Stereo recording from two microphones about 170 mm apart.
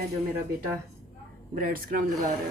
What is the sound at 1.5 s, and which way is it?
Speech, 55° right (ahead or behind).